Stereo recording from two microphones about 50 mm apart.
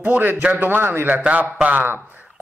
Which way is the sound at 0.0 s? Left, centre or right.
Right.